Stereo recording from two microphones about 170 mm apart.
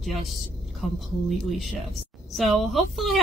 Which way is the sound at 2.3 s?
Centre (ahead or behind).